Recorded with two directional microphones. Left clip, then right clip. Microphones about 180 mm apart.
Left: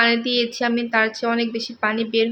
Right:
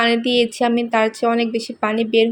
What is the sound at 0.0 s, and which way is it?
Speech, 15° right (ahead or behind).